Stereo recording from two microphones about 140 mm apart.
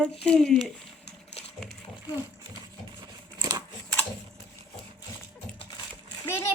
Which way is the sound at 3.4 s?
25° right (ahead or behind).